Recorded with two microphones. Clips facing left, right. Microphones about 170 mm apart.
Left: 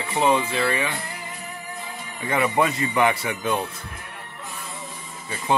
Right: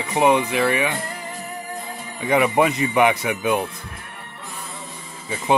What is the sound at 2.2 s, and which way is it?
Speech, 15° right (ahead or behind).